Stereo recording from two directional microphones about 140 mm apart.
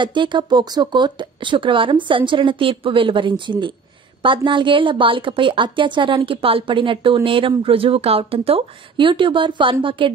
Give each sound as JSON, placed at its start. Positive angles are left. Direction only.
{"t": 0.0, "sound": "a woman's voice", "side_deg": -35}